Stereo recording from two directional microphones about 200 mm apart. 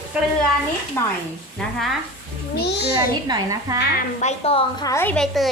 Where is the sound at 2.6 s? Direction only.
55° left (ahead or behind).